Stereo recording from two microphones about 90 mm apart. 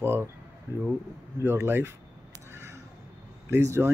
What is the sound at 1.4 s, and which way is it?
Speech, 25° right (ahead or behind).